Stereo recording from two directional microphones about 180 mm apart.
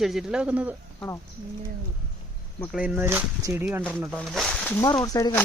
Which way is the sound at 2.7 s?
10° right (ahead or behind).